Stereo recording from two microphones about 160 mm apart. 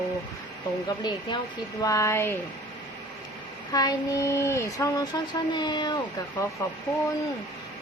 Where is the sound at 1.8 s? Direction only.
20° left (ahead or behind).